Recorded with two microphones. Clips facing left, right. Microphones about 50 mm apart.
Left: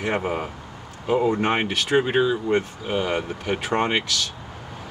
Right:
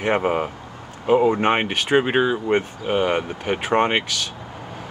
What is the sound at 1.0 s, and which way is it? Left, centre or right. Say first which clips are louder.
Speech: right 4 dB; right.